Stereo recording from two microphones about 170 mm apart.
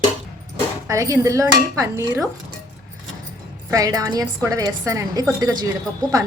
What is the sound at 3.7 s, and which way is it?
A woman's voice, 20° right (ahead or behind).